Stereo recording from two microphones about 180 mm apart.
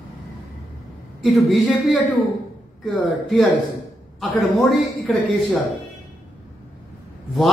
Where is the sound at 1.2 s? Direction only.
Centre (ahead or behind).